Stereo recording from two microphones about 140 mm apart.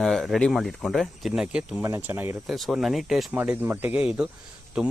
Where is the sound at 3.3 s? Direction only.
10° right (ahead or behind).